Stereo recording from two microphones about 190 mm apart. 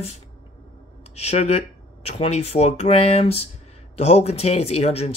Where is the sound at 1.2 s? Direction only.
35° left (ahead or behind).